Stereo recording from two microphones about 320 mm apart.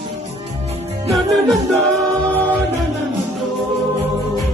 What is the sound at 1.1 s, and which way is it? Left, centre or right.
Music, centre.